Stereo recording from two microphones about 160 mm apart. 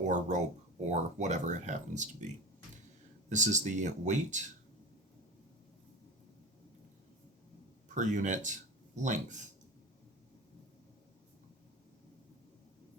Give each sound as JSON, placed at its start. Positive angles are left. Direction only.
{"t": 0.1, "sound": "speech", "side_deg": -50}
{"t": 3.2, "sound": "speech", "side_deg": -50}
{"t": 7.9, "sound": "speech", "side_deg": -50}